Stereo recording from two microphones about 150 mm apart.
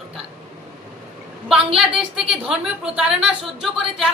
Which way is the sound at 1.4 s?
5° right (ahead or behind).